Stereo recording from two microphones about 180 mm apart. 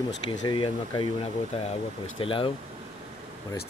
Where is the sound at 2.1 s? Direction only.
30° left (ahead or behind).